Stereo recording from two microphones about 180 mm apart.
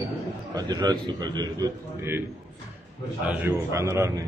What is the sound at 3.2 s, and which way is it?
A man's voice, 15° right (ahead or behind).